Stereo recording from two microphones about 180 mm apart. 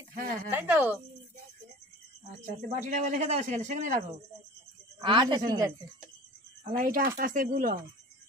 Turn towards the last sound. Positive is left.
turn(degrees=-50)  # may be behind; listen again after turning